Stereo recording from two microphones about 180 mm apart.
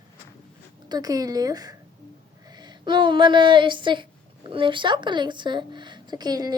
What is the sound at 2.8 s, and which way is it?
Speech, 25° right (ahead or behind).